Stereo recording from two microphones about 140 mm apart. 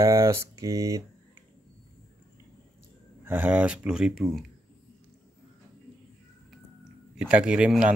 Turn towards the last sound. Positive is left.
turn(degrees=-5)  # may be behind; listen again after turning